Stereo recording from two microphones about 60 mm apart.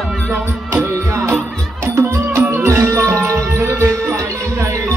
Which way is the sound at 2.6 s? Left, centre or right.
Right.